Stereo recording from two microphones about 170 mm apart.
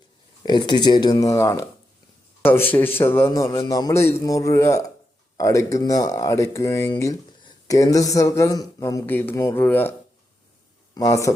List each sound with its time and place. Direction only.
0.4 s a man's voice: 25° left (ahead or behind)
10.9 s speech: 20° left (ahead or behind)